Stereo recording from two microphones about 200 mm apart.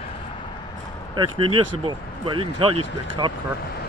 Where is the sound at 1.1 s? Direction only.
25° right (ahead or behind).